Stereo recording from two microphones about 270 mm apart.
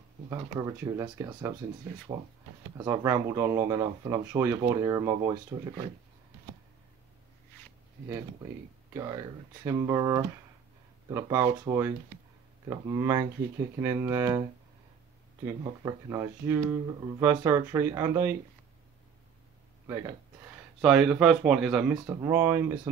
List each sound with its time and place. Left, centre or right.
0.3 s speech: centre
8.9 s speech: centre
15.4 s speech: centre
20.8 s speech: centre